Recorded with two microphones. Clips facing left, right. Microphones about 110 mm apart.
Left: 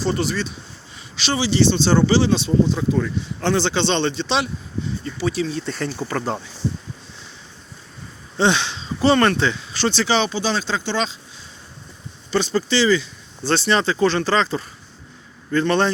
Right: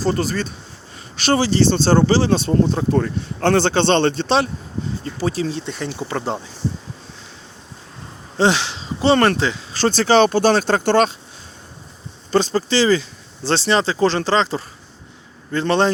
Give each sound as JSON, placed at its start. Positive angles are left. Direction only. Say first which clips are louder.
{"t": 0.0, "sound": "speech", "louder": "right 2 dB", "side_deg": -40}
{"t": 8.4, "sound": "speech", "louder": "right 2 dB", "side_deg": -30}
{"t": 12.3, "sound": "speech", "louder": "right 2 dB", "side_deg": -35}